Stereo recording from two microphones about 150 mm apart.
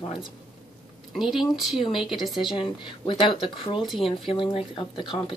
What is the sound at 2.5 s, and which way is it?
Speech, 35° left (ahead or behind).